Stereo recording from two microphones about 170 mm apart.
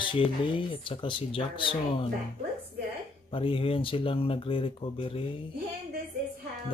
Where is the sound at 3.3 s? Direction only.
30° left (ahead or behind).